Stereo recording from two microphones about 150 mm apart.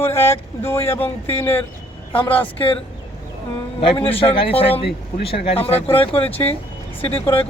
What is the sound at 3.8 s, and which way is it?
Speech, 35° left (ahead or behind).